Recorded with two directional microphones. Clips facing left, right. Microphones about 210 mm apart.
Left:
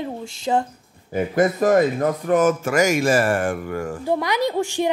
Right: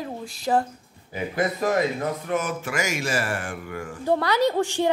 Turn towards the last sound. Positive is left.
turn(degrees=15)  # may be behind; listen again after turning